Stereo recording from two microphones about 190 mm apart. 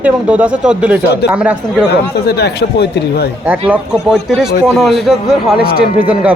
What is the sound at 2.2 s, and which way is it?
Speech, 60° left (ahead or behind).